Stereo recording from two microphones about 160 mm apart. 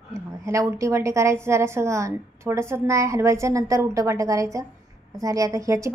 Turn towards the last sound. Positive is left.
turn(degrees=-20)  # may be behind; listen again after turning